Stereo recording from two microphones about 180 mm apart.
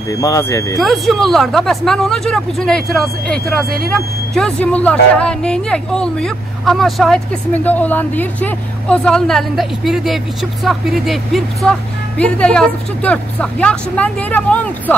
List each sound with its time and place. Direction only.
0.1 s speech: 20° left (ahead or behind)
0.7 s speech: centre (ahead or behind)